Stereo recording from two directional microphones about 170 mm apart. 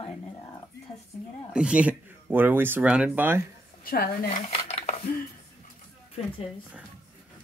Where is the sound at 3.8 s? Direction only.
65° left (ahead or behind).